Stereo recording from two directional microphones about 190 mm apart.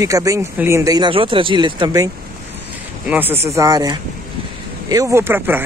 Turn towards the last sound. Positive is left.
turn(degrees=-10)  # may be behind; listen again after turning